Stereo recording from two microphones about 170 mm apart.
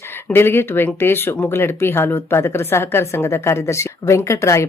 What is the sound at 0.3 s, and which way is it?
Speech, 15° left (ahead or behind).